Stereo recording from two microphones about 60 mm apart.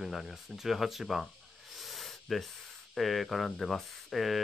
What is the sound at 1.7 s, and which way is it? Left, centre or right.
Snake, centre.